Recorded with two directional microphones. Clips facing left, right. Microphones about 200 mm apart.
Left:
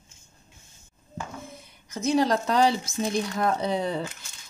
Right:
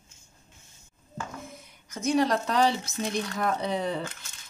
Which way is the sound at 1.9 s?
30° left (ahead or behind).